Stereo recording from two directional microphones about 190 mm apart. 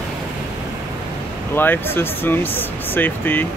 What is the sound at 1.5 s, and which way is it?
Speech, 10° left (ahead or behind).